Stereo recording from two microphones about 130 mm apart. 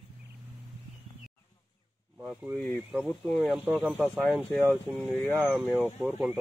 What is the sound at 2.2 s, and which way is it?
Speech, 15° right (ahead or behind).